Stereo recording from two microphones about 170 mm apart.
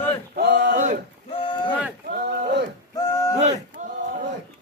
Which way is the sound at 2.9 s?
20° left (ahead or behind).